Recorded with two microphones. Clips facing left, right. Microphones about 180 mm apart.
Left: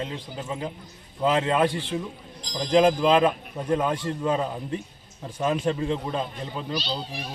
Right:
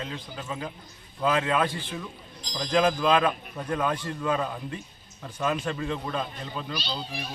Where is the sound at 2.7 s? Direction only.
20° left (ahead or behind).